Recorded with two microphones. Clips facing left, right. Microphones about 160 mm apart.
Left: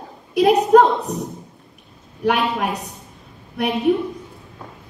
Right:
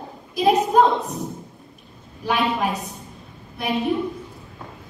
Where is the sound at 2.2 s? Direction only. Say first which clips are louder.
Left 2 dB; 70° left (ahead or behind).